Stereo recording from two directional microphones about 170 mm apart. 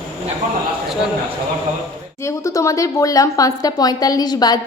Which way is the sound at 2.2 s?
20° left (ahead or behind).